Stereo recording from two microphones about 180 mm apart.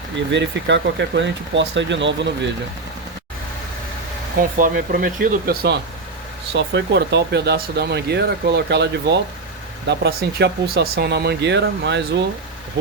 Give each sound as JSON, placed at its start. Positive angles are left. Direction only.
{"t": 0.3, "sound": "speech", "side_deg": -85}
{"t": 4.4, "sound": "speech", "side_deg": -50}
{"t": 6.5, "sound": "speech", "side_deg": -75}